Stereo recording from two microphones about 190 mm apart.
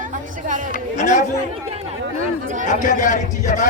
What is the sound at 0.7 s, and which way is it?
Speech, 40° left (ahead or behind).